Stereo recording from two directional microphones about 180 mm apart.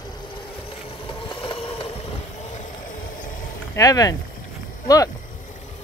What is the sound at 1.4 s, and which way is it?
Vehicle, 30° left (ahead or behind).